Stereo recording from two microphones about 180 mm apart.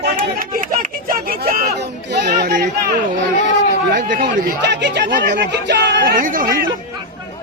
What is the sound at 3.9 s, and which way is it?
Speech, 50° right (ahead or behind).